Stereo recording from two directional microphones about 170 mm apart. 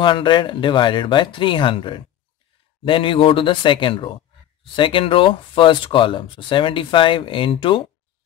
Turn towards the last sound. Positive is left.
turn(degrees=30)  # may be behind; listen again after turning